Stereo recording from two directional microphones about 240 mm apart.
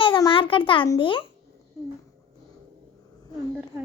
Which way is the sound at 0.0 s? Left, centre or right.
Left.